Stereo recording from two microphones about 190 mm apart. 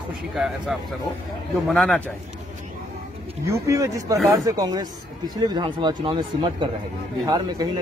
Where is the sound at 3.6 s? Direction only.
15° right (ahead or behind).